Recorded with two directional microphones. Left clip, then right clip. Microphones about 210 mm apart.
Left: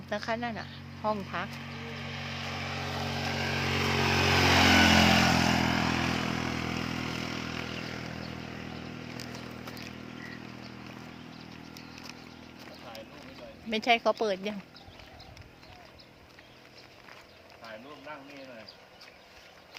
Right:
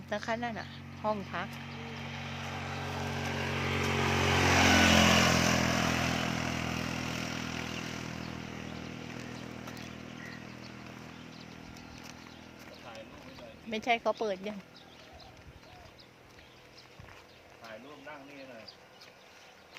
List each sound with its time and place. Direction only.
0.1 s speech: 5° left (ahead or behind)
1.6 s vehicle: 45° left (ahead or behind); by 4.8 s 20° left (ahead or behind)
4.9 s vehicle: 15° right (ahead or behind)
5.2 s vehicle: 35° right (ahead or behind); by 9.0 s 50° right (ahead or behind)
10.2 s vehicle: 50° right (ahead or behind)
13.7 s speech: 20° left (ahead or behind)